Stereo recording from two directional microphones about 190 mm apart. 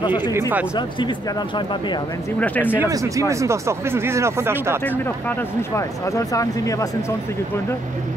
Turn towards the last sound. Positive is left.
turn(degrees=15)  # may be behind; listen again after turning